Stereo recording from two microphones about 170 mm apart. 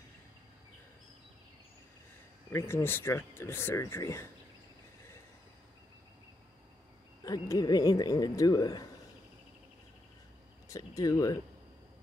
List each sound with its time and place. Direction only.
2.5 s speech: 15° left (ahead or behind)
7.2 s a man's voice: 20° left (ahead or behind)
10.7 s a man's voice: 20° left (ahead or behind)